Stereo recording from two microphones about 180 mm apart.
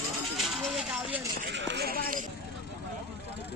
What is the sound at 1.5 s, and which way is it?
Speech, 75° right (ahead or behind).